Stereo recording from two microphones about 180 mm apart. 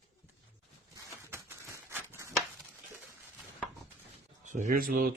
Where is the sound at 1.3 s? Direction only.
15° right (ahead or behind).